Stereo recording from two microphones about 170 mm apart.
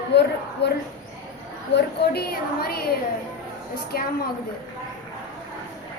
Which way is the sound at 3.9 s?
60° left (ahead or behind).